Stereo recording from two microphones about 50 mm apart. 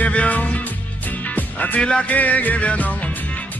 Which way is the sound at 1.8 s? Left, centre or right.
Centre.